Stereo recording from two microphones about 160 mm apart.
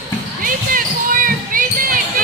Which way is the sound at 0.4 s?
60° right (ahead or behind).